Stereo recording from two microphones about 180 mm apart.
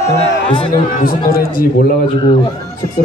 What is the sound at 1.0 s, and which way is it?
Speech, 55° left (ahead or behind).